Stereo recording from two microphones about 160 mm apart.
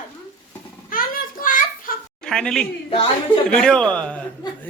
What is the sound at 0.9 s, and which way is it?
Child singing, 60° left (ahead or behind).